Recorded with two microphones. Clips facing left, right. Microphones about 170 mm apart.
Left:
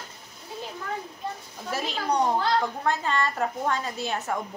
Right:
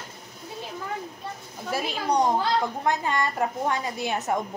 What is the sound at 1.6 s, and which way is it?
A woman's voice, 10° right (ahead or behind).